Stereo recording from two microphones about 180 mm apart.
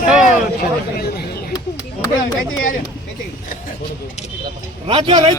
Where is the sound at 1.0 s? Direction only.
60° left (ahead or behind).